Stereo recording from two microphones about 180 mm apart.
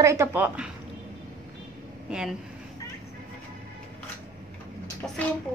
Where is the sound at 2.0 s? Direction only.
5° right (ahead or behind).